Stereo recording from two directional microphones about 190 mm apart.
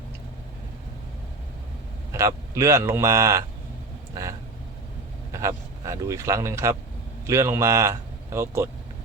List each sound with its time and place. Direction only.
2.1 s speech: 15° right (ahead or behind)